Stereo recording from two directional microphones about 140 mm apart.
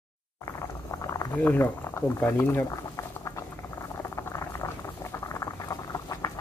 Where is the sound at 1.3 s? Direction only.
15° left (ahead or behind).